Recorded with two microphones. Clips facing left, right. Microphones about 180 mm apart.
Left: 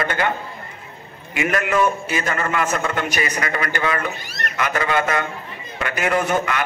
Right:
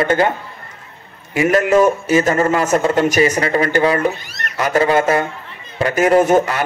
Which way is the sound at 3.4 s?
30° right (ahead or behind).